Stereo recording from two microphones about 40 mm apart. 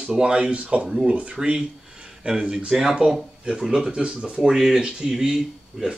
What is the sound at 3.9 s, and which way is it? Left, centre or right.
Speech, right.